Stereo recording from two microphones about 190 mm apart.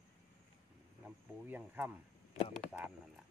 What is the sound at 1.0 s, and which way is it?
Speech, 5° right (ahead or behind).